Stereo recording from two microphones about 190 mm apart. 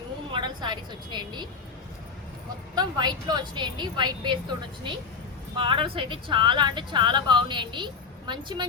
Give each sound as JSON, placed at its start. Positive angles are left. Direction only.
{"t": 0.3, "sound": "a woman's voice", "side_deg": -25}
{"t": 2.7, "sound": "speech", "side_deg": -20}